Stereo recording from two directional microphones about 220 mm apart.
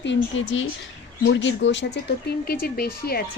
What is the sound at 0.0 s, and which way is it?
A woman's voice, 55° left (ahead or behind).